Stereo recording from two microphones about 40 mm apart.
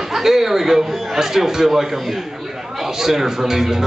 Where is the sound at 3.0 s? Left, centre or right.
Centre.